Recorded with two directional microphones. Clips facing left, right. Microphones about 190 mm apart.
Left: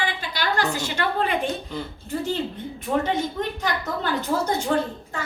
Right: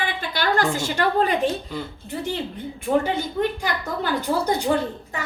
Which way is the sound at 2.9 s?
25° right (ahead or behind).